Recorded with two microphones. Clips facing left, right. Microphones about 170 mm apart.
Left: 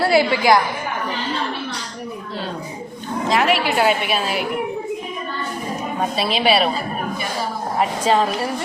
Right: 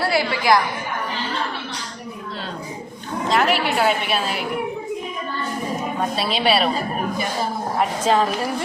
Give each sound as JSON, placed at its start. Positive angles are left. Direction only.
{"t": 0.1, "sound": "a woman's voice", "side_deg": 25}
{"t": 3.2, "sound": "a woman's voice", "side_deg": 5}
{"t": 6.1, "sound": "a woman's voice", "side_deg": 5}
{"t": 7.8, "sound": "a woman's voice", "side_deg": 0}